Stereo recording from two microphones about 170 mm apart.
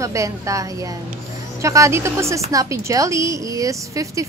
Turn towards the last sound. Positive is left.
turn(degrees=-20)  # may be behind; listen again after turning